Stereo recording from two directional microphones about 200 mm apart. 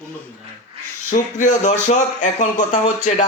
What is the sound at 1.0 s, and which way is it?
A man's voice, 40° left (ahead or behind).